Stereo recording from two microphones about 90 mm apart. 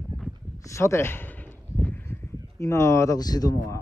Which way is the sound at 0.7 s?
30° left (ahead or behind).